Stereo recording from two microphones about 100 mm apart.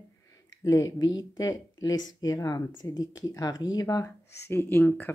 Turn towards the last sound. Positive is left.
turn(degrees=20)  # may be behind; listen again after turning